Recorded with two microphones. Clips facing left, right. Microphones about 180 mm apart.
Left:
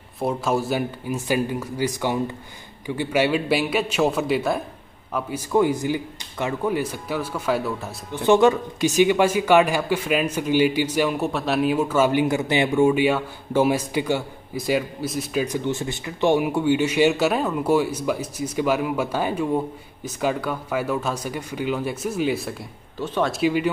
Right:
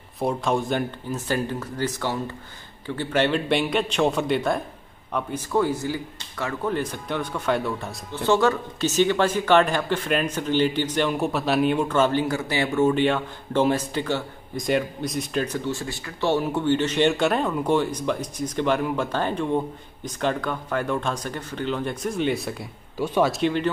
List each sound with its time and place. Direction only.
0.2 s a man's voice: centre (ahead or behind)
8.1 s speech: 15° left (ahead or behind); by 22.7 s centre (ahead or behind)
22.9 s speech: 10° right (ahead or behind)
23.3 s speech: 5° left (ahead or behind)